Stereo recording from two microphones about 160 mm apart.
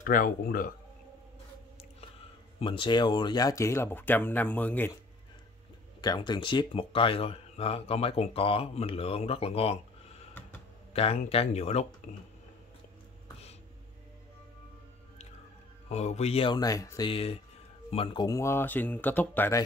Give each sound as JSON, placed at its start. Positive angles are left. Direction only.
{"t": 0.0, "sound": "speech", "side_deg": 60}
{"t": 2.6, "sound": "speech", "side_deg": 30}
{"t": 5.9, "sound": "speech", "side_deg": 25}
{"t": 10.9, "sound": "speech", "side_deg": 40}
{"t": 15.9, "sound": "speech", "side_deg": 45}
{"t": 17.1, "sound": "speech", "side_deg": 35}